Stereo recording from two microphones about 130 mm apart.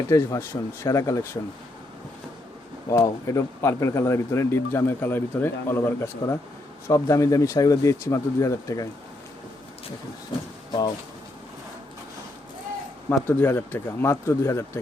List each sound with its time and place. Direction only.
0.1 s speech: 25° left (ahead or behind)
2.9 s speech: 25° left (ahead or behind)
13.1 s speech: 15° left (ahead or behind)